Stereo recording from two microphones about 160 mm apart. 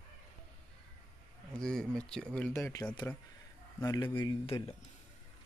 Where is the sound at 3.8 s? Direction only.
20° left (ahead or behind).